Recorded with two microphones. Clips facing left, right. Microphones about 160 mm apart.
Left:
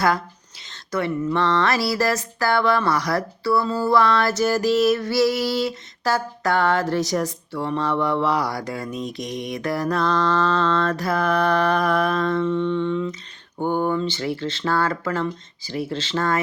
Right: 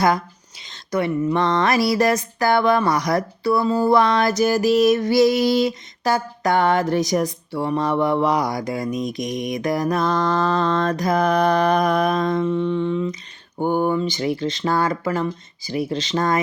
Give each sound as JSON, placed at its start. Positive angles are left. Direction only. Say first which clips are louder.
{"t": 0.7, "sound": "speech", "louder": "right 3 dB", "side_deg": -15}